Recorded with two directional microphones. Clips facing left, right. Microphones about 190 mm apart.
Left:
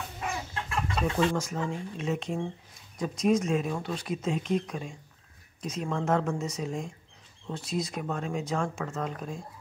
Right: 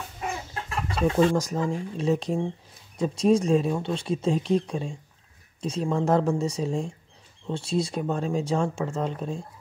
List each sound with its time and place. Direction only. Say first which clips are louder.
1.0 s speech: right 7 dB; 40° right (ahead or behind)